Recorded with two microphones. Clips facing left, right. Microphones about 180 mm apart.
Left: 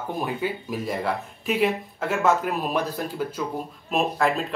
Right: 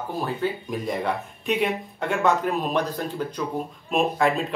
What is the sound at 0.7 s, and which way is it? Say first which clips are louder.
Speech: right 1 dB; centre (ahead or behind).